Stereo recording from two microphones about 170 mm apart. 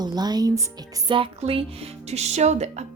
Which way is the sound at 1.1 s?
30° right (ahead or behind).